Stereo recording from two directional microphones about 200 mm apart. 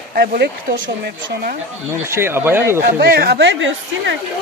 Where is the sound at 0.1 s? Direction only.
50° right (ahead or behind).